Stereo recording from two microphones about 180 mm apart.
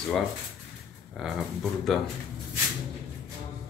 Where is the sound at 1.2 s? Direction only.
Centre (ahead or behind).